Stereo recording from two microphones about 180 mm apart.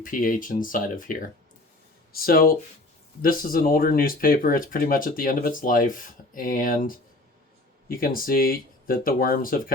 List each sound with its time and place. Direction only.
0.0 s speech: 50° left (ahead or behind)
8.0 s speech: 55° left (ahead or behind)